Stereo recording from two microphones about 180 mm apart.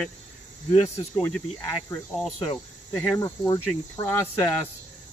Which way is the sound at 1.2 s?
15° left (ahead or behind).